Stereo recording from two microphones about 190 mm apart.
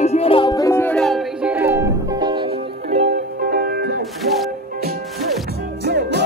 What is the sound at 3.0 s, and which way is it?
Music, 55° right (ahead or behind).